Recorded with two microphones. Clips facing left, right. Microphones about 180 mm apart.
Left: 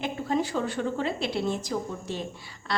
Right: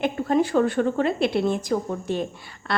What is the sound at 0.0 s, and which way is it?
A woman's voice, 60° right (ahead or behind).